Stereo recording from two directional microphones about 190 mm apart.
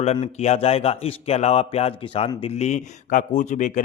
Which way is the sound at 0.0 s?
35° left (ahead or behind).